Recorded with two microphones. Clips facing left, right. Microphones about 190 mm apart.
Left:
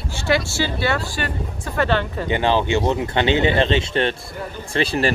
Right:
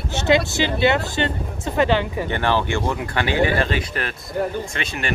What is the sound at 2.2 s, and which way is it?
Speech, 15° left (ahead or behind).